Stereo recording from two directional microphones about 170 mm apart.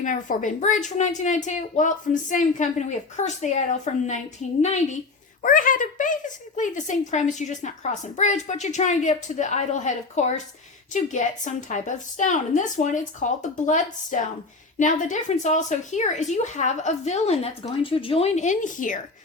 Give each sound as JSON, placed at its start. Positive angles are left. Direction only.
{"t": 0.0, "sound": "speech", "side_deg": 50}
{"t": 5.4, "sound": "speech", "side_deg": 50}